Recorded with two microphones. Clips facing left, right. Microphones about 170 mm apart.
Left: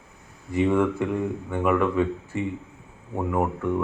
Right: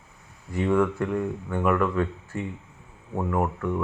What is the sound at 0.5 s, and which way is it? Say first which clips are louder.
A man's voice: left 2 dB; 5° left (ahead or behind).